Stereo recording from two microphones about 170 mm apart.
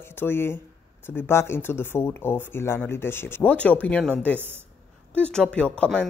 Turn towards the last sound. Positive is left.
turn(degrees=5)  # may be behind; listen again after turning